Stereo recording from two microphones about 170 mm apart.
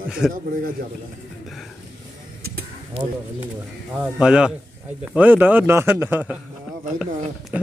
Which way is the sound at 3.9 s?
5° right (ahead or behind).